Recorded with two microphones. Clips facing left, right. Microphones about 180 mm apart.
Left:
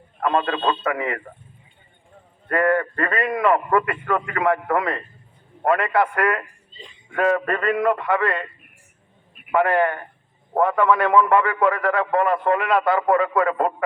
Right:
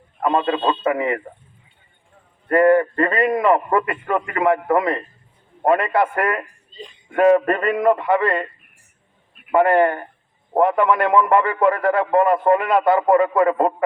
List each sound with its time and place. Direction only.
0.2 s a man's voice: 20° right (ahead or behind)
2.5 s a man's voice: 25° right (ahead or behind)
9.6 s a man's voice: 25° right (ahead or behind)